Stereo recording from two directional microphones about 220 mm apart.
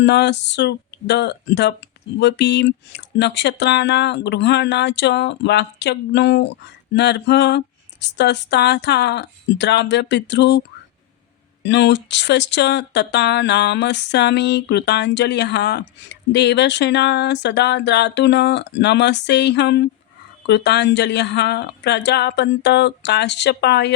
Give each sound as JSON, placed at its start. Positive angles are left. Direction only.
{"t": 0.0, "sound": "speech", "side_deg": 50}
{"t": 11.6, "sound": "speech", "side_deg": 50}